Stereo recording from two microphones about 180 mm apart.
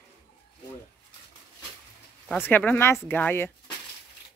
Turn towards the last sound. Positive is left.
turn(degrees=10)  # may be behind; listen again after turning